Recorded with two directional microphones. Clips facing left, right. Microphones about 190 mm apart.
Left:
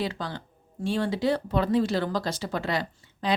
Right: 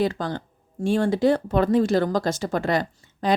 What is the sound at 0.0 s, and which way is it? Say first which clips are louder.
Speech: right 7 dB; 50° right (ahead or behind).